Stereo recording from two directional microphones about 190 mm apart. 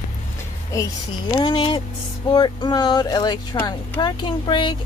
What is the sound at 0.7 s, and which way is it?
Speech, 20° left (ahead or behind).